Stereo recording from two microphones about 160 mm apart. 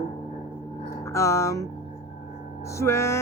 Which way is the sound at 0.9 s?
20° left (ahead or behind).